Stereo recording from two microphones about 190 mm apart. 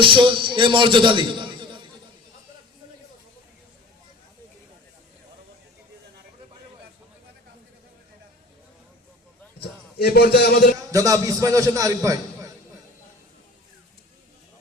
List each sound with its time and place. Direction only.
0.0 s a man's voice: 25° right (ahead or behind)
10.0 s a man's voice: 55° left (ahead or behind)
10.9 s a man's voice: 15° right (ahead or behind)